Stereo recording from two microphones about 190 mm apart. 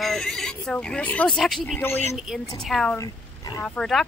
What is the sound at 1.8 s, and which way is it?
Speech, 10° left (ahead or behind).